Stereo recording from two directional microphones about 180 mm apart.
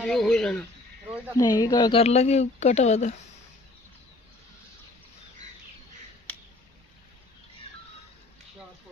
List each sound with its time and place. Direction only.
0.0 s speech: 5° left (ahead or behind)
1.3 s speech: 20° left (ahead or behind); by 3.2 s 40° left (ahead or behind)
6.3 s a sound: 10° left (ahead or behind)